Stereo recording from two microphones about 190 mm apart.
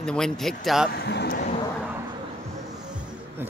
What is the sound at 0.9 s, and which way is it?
Speech, 60° left (ahead or behind).